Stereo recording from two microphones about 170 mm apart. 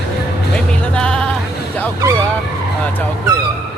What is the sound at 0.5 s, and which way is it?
Music, 5° left (ahead or behind).